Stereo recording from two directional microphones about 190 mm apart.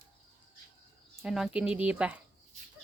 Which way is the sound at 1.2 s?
Centre (ahead or behind).